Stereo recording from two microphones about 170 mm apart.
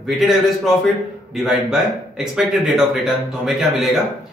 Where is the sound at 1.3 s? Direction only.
Centre (ahead or behind).